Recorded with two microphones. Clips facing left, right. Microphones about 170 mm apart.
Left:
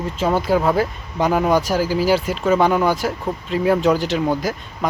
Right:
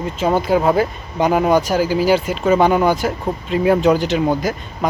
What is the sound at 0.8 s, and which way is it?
Speech, centre (ahead or behind).